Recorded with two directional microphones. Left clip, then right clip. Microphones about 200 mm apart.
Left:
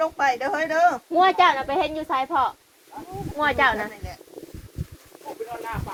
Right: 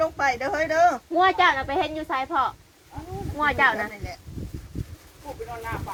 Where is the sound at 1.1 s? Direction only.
20° left (ahead or behind).